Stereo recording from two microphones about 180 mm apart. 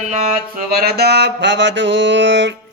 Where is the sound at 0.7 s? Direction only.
60° right (ahead or behind); by 2.5 s 85° right.